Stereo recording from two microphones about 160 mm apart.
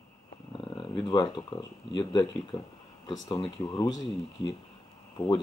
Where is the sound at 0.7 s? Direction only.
30° left (ahead or behind).